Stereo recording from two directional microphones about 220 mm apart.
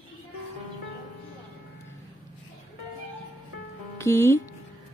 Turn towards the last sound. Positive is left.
turn(degrees=10)  # may be behind; listen again after turning